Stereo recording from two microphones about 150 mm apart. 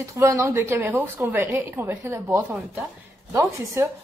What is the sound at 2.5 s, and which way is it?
Speech, 5° right (ahead or behind).